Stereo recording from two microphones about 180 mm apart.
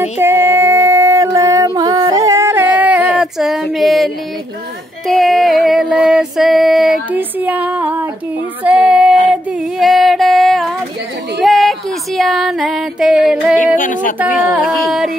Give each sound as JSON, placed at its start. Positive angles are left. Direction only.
{"t": 0.2, "sound": "female singing", "side_deg": -10}
{"t": 11.4, "sound": "music", "side_deg": 0}
{"t": 13.7, "sound": "a sound", "side_deg": 50}